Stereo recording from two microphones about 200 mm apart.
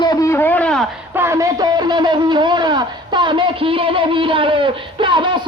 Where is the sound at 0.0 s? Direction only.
15° left (ahead or behind).